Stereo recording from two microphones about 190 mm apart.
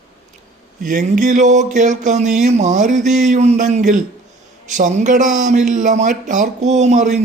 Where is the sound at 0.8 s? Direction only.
40° right (ahead or behind).